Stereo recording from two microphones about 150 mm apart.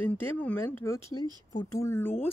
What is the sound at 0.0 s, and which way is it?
Speech, 15° left (ahead or behind).